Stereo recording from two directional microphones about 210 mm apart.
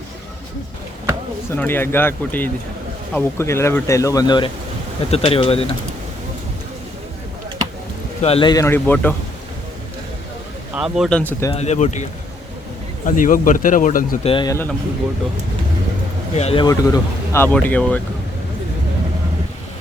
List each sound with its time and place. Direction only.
1.5 s speech: 10° left (ahead or behind); by 5.6 s 25° left (ahead or behind)
8.2 s speech: 25° left (ahead or behind); by 9.1 s 10° left (ahead or behind)
10.8 s speech: 5° right (ahead or behind)
11.5 s speech: 30° left (ahead or behind)
13.1 s speech: 40° left (ahead or behind)
14.3 s speech: 20° left (ahead or behind)
16.3 s speech: 30° left (ahead or behind)
16.6 s speech: 15° left (ahead or behind)